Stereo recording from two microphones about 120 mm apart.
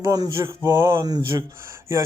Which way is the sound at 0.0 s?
30° right (ahead or behind).